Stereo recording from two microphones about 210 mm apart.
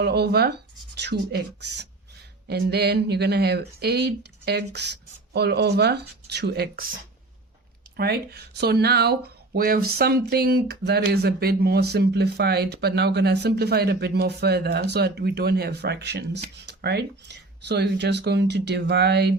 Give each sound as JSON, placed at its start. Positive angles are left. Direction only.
{"t": 0.0, "sound": "speech", "side_deg": -50}
{"t": 7.9, "sound": "speech", "side_deg": -50}